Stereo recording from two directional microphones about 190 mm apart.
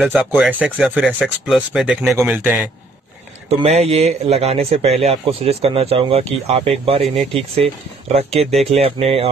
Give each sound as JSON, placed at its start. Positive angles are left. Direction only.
{"t": 0.0, "sound": "a man's voice", "side_deg": -10}
{"t": 3.4, "sound": "a man's voice", "side_deg": -35}